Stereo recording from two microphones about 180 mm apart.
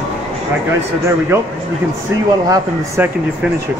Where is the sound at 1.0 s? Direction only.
15° right (ahead or behind).